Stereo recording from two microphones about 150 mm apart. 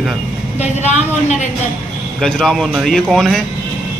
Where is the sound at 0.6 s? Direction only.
50° left (ahead or behind).